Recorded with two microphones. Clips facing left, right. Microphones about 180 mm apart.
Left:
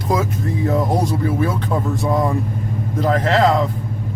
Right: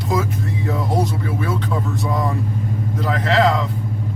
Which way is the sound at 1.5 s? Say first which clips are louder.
Left 2 dB; 50° left (ahead or behind).